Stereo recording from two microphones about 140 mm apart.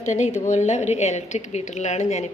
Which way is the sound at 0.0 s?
60° left (ahead or behind).